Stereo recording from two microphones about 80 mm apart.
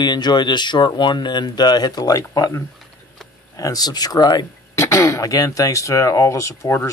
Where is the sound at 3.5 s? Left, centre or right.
Left.